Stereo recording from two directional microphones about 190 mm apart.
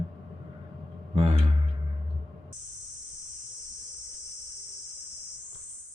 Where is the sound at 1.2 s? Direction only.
30° right (ahead or behind).